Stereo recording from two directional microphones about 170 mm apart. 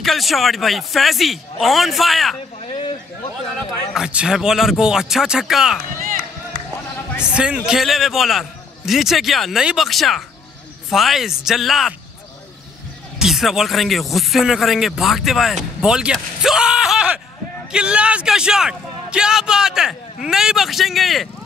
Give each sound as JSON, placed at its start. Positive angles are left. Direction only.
{"t": 0.0, "sound": "speech", "side_deg": 0}
{"t": 2.6, "sound": "a sound", "side_deg": 40}
{"t": 3.9, "sound": "speech", "side_deg": -5}
{"t": 7.3, "sound": "speech", "side_deg": -5}
{"t": 13.2, "sound": "speech", "side_deg": 0}